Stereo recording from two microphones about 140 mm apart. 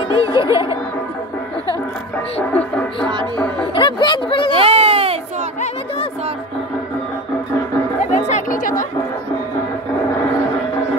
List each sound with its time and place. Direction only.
0.2 s music: 25° right (ahead or behind)
2.5 s music: 10° left (ahead or behind)
3.7 s a sound: 35° left (ahead or behind)
4.5 s baby cry: 40° right (ahead or behind)
8.0 s music: 60° left (ahead or behind)